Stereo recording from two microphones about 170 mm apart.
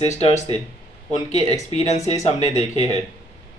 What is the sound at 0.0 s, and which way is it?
Speech, 40° left (ahead or behind).